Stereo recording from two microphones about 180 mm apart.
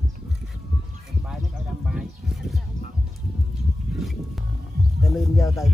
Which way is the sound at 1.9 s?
5° right (ahead or behind).